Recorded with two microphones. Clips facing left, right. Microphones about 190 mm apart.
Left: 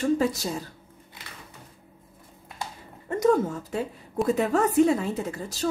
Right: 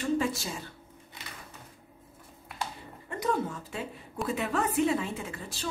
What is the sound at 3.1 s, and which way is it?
A woman's voice, 45° left (ahead or behind).